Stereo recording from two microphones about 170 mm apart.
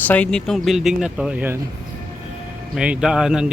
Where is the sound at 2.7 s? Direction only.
5° right (ahead or behind).